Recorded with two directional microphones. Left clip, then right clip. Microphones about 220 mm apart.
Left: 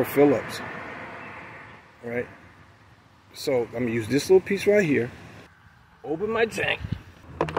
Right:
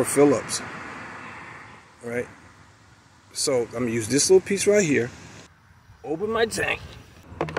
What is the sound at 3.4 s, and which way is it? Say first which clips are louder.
Speech: right 1 dB; centre (ahead or behind).